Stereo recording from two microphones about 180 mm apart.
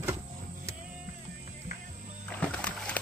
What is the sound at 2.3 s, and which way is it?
Music, 5° left (ahead or behind).